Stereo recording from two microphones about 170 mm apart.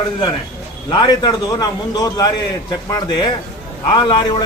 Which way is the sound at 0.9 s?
25° left (ahead or behind).